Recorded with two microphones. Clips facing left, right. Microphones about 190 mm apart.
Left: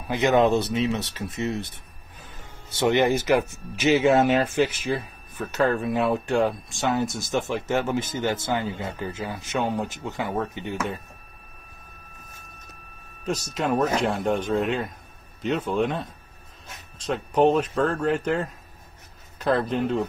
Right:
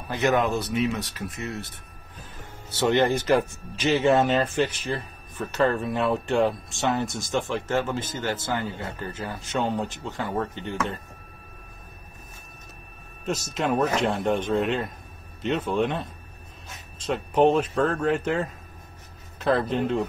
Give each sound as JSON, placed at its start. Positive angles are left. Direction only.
{"t": 0.1, "sound": "speech", "side_deg": 15}
{"t": 2.8, "sound": "speech", "side_deg": 10}
{"t": 5.4, "sound": "speech", "side_deg": 0}
{"t": 13.6, "sound": "speech", "side_deg": 0}